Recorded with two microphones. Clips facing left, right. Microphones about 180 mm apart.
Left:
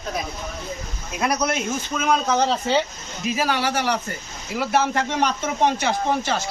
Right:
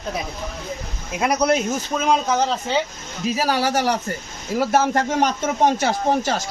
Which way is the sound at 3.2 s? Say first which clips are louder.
Right 2 dB; 35° right (ahead or behind).